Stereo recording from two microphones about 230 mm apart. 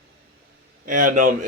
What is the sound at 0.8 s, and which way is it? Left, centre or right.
Speech, right.